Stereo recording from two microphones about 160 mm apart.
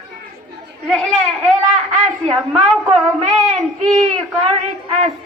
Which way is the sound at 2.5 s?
Centre (ahead or behind).